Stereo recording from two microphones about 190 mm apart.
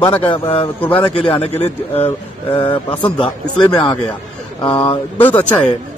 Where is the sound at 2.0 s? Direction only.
30° left (ahead or behind).